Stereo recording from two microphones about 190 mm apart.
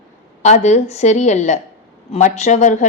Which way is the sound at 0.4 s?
40° left (ahead or behind).